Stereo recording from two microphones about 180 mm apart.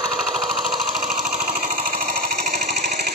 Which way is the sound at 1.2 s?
45° right (ahead or behind).